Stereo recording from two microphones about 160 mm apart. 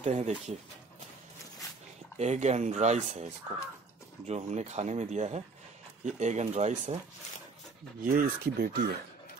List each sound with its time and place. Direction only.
0.0 s speech: 45° right (ahead or behind)
2.1 s speech: 45° right (ahead or behind)
8.0 s speech: 60° right (ahead or behind)